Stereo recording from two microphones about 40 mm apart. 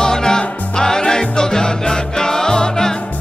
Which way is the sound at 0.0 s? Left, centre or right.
Centre.